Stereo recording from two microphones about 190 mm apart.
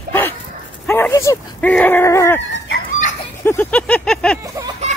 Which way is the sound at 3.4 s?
10° left (ahead or behind).